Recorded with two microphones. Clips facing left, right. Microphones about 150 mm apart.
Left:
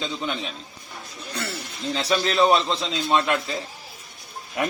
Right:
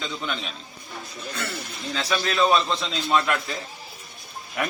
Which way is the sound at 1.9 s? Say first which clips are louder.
Left 3 dB; 25° left (ahead or behind).